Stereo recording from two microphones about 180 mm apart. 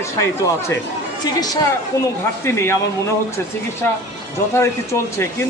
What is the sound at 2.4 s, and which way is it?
Speech, 15° left (ahead or behind).